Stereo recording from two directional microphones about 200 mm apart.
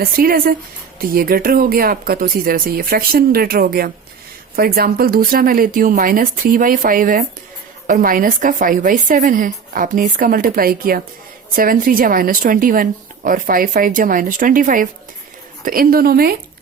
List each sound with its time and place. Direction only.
0.0 s speech: 50° right (ahead or behind)